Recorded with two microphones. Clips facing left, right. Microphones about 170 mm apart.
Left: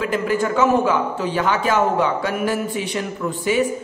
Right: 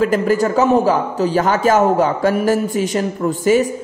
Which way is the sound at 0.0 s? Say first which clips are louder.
Right 5 dB; 40° right (ahead or behind).